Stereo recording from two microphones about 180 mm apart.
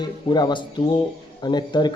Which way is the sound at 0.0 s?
25° left (ahead or behind).